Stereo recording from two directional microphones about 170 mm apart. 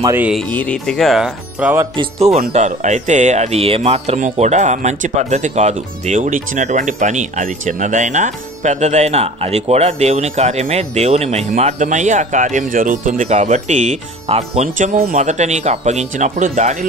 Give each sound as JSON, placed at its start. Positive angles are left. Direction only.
{"t": 0.0, "sound": "music", "side_deg": -15}
{"t": 0.3, "sound": "speech", "side_deg": 5}
{"t": 2.0, "sound": "speech", "side_deg": -40}